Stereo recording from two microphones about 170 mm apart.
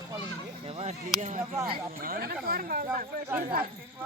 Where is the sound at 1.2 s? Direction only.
45° right (ahead or behind).